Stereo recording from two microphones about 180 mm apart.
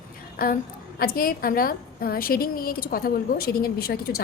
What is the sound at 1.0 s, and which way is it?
A woman's voice, 55° left (ahead or behind).